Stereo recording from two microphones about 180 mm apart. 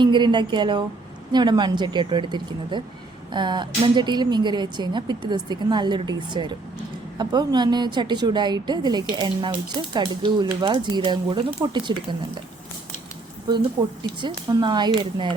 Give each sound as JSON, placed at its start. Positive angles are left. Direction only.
{"t": 0.0, "sound": "speech", "side_deg": -25}
{"t": 13.5, "sound": "speech", "side_deg": -25}